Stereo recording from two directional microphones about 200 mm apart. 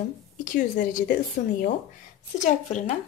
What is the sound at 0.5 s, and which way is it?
Speech, 40° left (ahead or behind).